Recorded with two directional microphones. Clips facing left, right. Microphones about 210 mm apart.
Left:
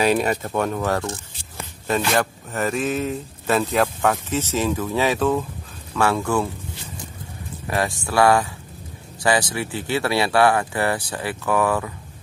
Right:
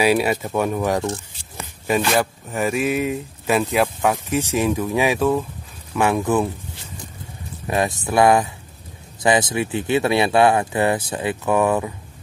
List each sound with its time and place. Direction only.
0.0 s speech: 10° right (ahead or behind)
7.6 s speech: 20° right (ahead or behind)